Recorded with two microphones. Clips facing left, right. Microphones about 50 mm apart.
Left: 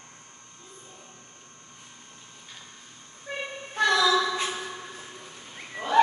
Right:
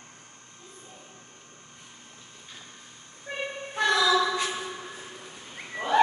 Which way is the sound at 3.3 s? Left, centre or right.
Centre.